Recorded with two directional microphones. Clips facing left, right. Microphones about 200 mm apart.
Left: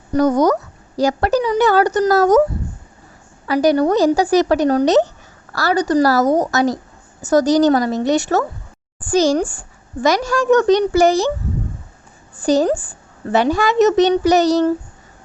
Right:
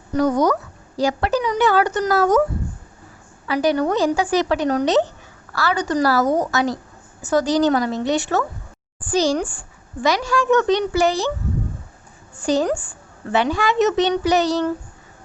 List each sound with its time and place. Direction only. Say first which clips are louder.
0.1 s a woman's voice: left 3 dB; 45° left (ahead or behind)
3.4 s a woman's voice: left 4 dB; 40° left (ahead or behind)
12.4 s a woman's voice: left 4 dB; 35° left (ahead or behind)